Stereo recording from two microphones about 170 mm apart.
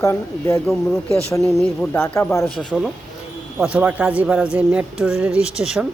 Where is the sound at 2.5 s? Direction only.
Centre (ahead or behind).